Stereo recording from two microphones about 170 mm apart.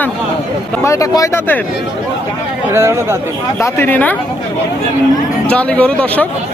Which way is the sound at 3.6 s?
10° left (ahead or behind).